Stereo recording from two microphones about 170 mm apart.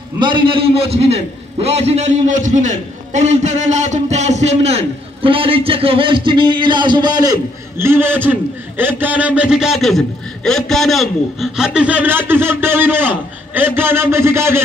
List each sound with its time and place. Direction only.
0.5 s a man's voice: 35° right (ahead or behind)
7.8 s a man's voice: 15° right (ahead or behind)